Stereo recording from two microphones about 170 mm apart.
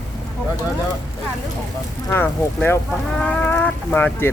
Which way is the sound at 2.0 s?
10° left (ahead or behind).